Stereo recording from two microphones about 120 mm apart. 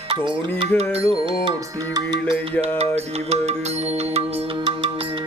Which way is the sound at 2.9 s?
60° right (ahead or behind).